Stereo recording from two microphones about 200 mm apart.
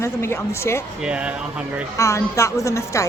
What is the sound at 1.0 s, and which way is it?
Speech, 5° right (ahead or behind).